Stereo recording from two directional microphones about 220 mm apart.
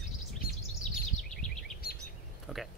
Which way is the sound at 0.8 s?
5° left (ahead or behind).